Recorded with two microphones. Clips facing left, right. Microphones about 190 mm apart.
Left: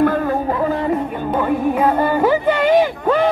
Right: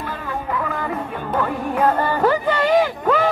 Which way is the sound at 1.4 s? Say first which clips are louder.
Left 3 dB; 10° left (ahead or behind).